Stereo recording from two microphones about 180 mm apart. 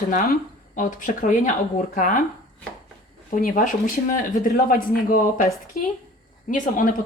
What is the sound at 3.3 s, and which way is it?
Speech, 45° left (ahead or behind).